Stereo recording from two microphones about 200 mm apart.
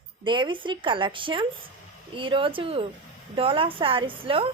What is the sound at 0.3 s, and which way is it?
A woman's voice, 25° right (ahead or behind).